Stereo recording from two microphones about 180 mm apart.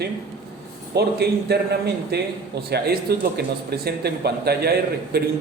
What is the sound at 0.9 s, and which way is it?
Speech, 65° right (ahead or behind).